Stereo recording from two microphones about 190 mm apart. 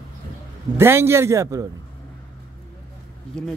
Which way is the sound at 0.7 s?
10° right (ahead or behind).